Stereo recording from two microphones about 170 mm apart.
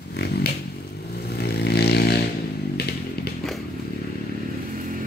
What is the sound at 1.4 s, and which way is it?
Vehicle, 70° left (ahead or behind).